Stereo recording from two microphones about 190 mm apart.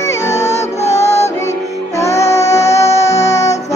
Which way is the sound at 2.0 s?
15° left (ahead or behind).